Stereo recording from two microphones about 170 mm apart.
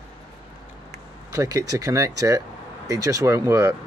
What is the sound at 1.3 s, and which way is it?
Speech, 20° right (ahead or behind).